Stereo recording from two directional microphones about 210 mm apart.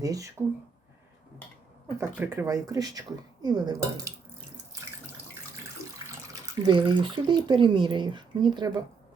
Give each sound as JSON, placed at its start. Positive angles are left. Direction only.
{"t": 0.0, "sound": "speech", "side_deg": -15}
{"t": 2.0, "sound": "speech", "side_deg": -10}
{"t": 6.1, "sound": "speech", "side_deg": -15}